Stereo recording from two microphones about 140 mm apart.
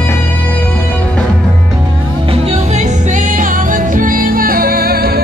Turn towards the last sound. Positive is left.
turn(degrees=-90)